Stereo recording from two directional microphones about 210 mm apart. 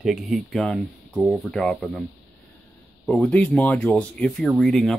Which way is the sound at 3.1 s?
5° left (ahead or behind).